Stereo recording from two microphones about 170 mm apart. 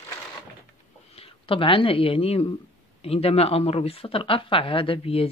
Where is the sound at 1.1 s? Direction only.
35° left (ahead or behind).